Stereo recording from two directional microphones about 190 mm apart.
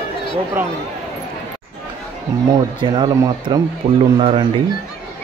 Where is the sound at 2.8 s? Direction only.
20° right (ahead or behind).